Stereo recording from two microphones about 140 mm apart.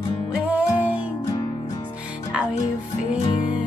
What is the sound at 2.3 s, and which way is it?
Music, 5° right (ahead or behind).